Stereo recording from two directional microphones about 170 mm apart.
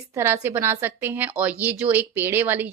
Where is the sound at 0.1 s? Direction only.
15° right (ahead or behind).